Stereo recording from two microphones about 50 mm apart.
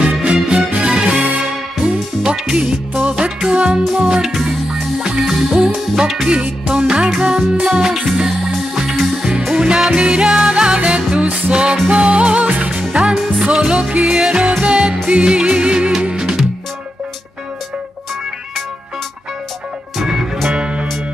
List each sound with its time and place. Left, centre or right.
0.2 s music: centre
3.8 s music: centre
6.2 s music: right
9.5 s music: centre
12.9 s music: centre
20.5 s music: right